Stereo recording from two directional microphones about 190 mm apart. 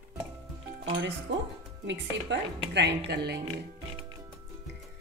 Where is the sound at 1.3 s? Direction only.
70° right (ahead or behind).